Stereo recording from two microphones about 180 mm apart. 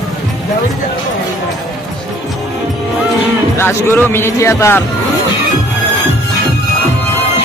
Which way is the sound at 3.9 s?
10° left (ahead or behind).